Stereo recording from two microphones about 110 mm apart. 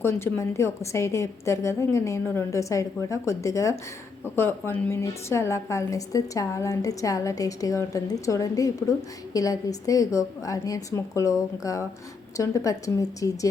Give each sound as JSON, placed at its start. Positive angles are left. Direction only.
{"t": 0.0, "sound": "a woman's voice", "side_deg": 25}